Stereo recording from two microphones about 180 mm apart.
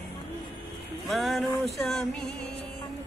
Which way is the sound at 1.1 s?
Centre (ahead or behind).